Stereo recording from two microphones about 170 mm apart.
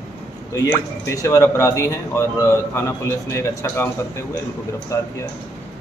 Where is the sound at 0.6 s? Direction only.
20° left (ahead or behind).